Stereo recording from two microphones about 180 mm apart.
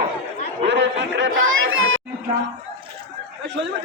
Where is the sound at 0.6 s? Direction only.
70° right (ahead or behind); by 2.0 s 90° right.